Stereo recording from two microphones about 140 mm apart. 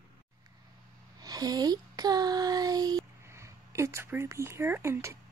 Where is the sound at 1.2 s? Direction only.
30° right (ahead or behind).